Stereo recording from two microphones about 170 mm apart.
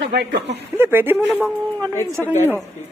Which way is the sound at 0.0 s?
85° right.